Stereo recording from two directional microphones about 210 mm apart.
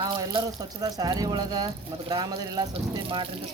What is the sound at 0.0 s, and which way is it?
Speech, 20° right (ahead or behind).